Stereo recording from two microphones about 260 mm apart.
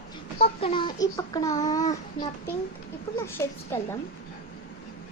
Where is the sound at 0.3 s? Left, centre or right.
Left.